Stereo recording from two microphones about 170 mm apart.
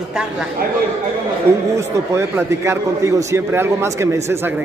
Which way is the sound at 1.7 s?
15° right (ahead or behind).